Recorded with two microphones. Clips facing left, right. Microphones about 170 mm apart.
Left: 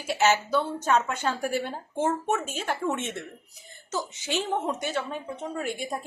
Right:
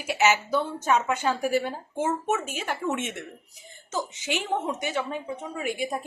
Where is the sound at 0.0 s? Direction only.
10° right (ahead or behind).